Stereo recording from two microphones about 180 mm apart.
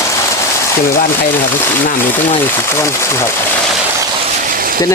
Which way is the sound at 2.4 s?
15° left (ahead or behind).